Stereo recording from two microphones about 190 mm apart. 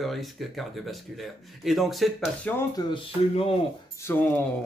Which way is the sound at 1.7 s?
Centre (ahead or behind).